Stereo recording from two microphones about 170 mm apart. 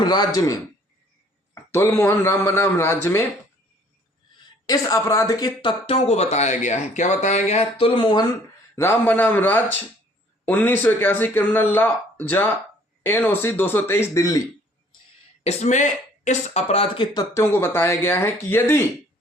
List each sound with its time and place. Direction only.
0.0 s a man's voice: 25° left (ahead or behind)
1.7 s speech: 15° left (ahead or behind)
4.6 s speech: 20° left (ahead or behind)
8.7 s speech: 15° left (ahead or behind)
15.4 s speech: 45° left (ahead or behind)
17.3 s speech: 15° left (ahead or behind)